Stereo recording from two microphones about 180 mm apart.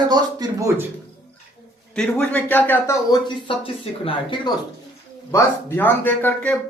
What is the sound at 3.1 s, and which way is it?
Speech, 30° left (ahead or behind).